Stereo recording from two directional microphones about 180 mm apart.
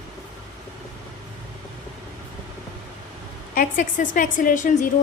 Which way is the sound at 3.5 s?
45° left (ahead or behind).